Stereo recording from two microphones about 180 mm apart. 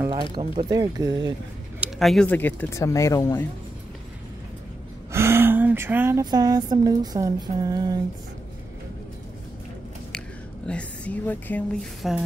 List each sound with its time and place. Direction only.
0.3 s speech: 30° right (ahead or behind)
1.8 s speech: centre (ahead or behind)
5.1 s a sound: 15° right (ahead or behind)
10.7 s speech: 5° left (ahead or behind)